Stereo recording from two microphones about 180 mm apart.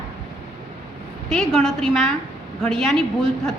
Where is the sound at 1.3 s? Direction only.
Centre (ahead or behind).